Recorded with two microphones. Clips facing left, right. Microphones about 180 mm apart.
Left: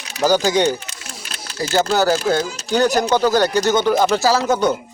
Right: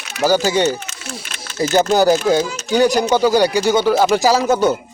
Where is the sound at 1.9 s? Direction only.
15° right (ahead or behind).